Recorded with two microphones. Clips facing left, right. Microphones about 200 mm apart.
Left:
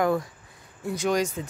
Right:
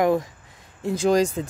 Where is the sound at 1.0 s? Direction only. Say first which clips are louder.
Right 6 dB; 35° right (ahead or behind).